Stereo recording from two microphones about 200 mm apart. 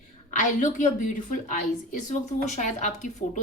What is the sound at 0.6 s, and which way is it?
A woman's voice, 40° left (ahead or behind).